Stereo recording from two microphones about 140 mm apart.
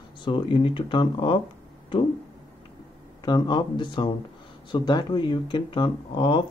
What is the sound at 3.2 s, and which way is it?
Speech, 30° left (ahead or behind).